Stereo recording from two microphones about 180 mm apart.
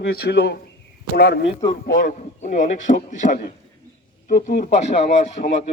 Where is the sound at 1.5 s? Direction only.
35° left (ahead or behind).